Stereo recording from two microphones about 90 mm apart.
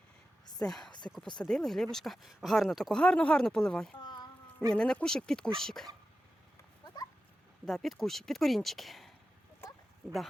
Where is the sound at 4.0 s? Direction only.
55° left (ahead or behind).